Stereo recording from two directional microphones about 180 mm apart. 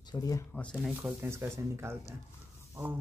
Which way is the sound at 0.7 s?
5° right (ahead or behind).